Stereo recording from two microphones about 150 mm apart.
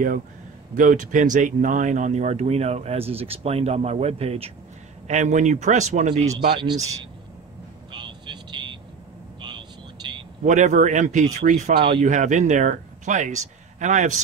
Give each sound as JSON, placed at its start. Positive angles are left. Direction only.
{"t": 0.7, "sound": "speech", "side_deg": -60}
{"t": 6.6, "sound": "speech", "side_deg": -25}
{"t": 7.9, "sound": "vehicle", "side_deg": -30}
{"t": 10.4, "sound": "speech", "side_deg": -55}